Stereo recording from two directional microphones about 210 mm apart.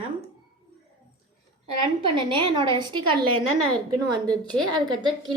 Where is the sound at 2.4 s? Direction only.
25° right (ahead or behind).